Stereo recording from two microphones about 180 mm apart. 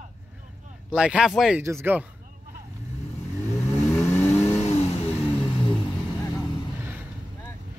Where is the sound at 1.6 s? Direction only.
15° right (ahead or behind).